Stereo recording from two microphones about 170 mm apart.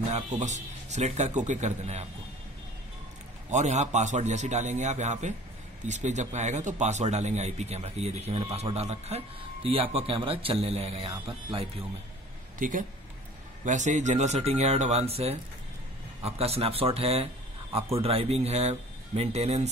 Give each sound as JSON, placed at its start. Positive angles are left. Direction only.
{"t": 0.1, "sound": "speech", "side_deg": -45}
{"t": 3.4, "sound": "speech", "side_deg": -40}
{"t": 12.5, "sound": "speech", "side_deg": -50}